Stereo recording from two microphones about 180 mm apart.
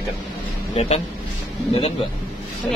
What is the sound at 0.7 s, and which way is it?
Speech, 35° left (ahead or behind).